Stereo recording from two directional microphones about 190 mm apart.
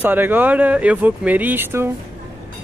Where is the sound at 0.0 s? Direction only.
10° right (ahead or behind).